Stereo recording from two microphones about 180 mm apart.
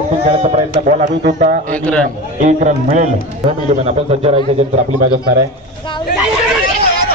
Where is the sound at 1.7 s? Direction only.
5° left (ahead or behind).